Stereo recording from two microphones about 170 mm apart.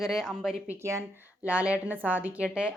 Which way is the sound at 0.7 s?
15° right (ahead or behind).